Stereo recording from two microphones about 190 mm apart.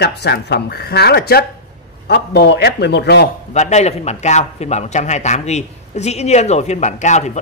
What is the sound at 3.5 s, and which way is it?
A man's voice, 35° left (ahead or behind).